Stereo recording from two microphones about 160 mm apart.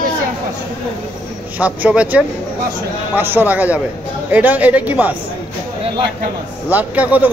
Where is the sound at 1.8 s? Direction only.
5° right (ahead or behind).